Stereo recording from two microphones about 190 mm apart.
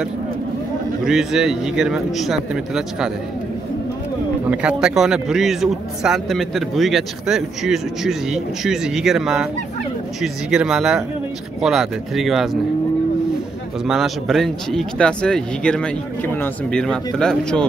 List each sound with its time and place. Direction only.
1.0 s a man's voice: 5° right (ahead or behind)
4.5 s a man's voice: 5° right (ahead or behind)
13.8 s a man's voice: centre (ahead or behind)